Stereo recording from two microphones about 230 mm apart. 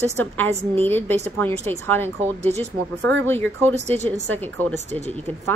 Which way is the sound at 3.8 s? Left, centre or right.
Right.